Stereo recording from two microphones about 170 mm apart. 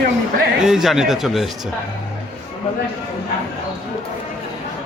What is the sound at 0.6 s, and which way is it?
Speech, centre (ahead or behind).